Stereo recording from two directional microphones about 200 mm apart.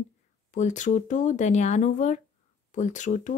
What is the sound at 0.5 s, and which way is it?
Speech, 35° left (ahead or behind).